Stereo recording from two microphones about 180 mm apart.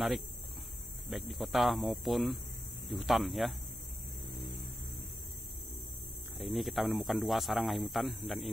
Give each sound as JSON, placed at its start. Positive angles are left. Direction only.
{"t": 1.1, "sound": "speech", "side_deg": 0}
{"t": 6.3, "sound": "speech", "side_deg": 0}